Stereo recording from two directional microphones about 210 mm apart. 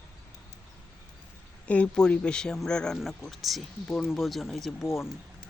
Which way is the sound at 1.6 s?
5° left (ahead or behind).